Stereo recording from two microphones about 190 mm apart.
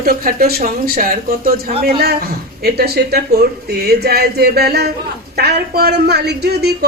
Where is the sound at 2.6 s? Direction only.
55° right (ahead or behind).